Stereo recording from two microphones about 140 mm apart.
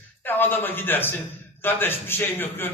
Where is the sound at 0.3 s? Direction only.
15° left (ahead or behind).